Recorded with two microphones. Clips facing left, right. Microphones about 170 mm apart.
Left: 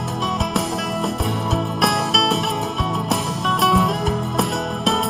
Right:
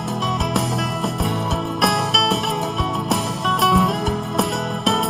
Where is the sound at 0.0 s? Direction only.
Centre (ahead or behind).